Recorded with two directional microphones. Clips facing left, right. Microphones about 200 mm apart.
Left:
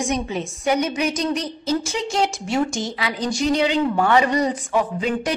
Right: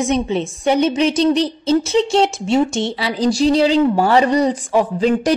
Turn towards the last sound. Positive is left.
turn(degrees=-35)  # may be behind; listen again after turning